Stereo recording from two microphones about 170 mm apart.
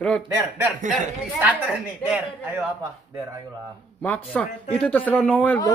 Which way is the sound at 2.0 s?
10° right (ahead or behind).